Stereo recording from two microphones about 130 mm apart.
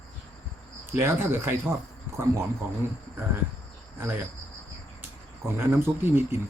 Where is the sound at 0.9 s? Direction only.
20° right (ahead or behind).